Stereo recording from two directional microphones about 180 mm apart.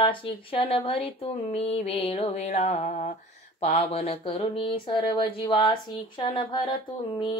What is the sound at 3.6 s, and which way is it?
Mantra, 35° left (ahead or behind).